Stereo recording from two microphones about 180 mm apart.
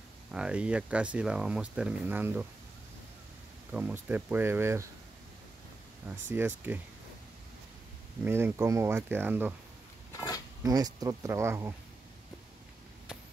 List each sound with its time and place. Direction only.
0.3 s speech: 5° right (ahead or behind)
3.7 s speech: 10° right (ahead or behind)
6.3 s speech: 10° right (ahead or behind)
8.2 s speech: 10° right (ahead or behind)
10.6 s speech: 20° right (ahead or behind)